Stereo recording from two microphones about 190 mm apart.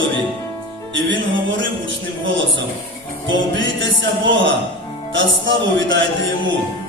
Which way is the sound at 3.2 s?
80° right.